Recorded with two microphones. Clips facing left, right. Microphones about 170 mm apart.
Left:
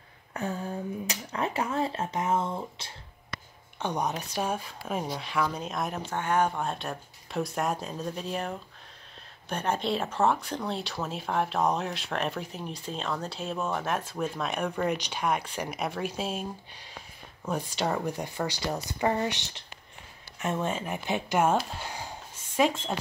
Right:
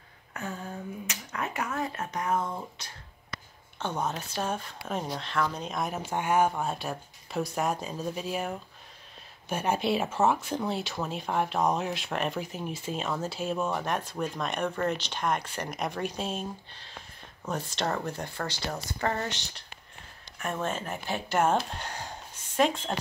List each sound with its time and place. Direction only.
0.3 s a sound: 30° left (ahead or behind)
1.0 s speech: 30° left (ahead or behind)
3.8 s speech: 15° left (ahead or behind)
6.0 s speech: 10° right (ahead or behind); by 22.9 s 5° left (ahead or behind)